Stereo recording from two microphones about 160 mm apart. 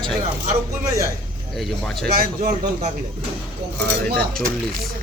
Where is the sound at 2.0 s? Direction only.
70° right (ahead or behind).